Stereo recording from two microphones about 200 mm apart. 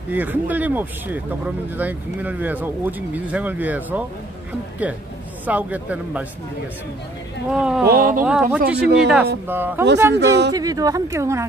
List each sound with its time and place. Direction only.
0.1 s speech: 10° right (ahead or behind)
5.4 s speech: 10° right (ahead or behind)
7.5 s speech: 5° right (ahead or behind)
7.9 s speech: 45° right (ahead or behind)
8.2 s speech: 10° right (ahead or behind)
10.1 s speech: 60° right (ahead or behind)
10.5 s speech: 20° right (ahead or behind)